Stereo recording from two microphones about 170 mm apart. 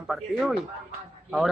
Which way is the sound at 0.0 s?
Centre (ahead or behind).